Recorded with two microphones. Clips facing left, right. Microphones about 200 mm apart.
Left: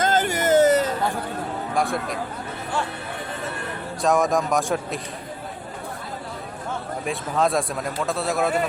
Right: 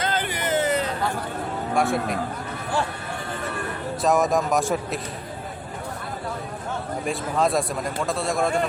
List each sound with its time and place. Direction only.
0.0 s a sound: 45° left (ahead or behind)
1.7 s speech: centre (ahead or behind)
4.0 s a man's voice: centre (ahead or behind)
7.0 s a man's voice: centre (ahead or behind)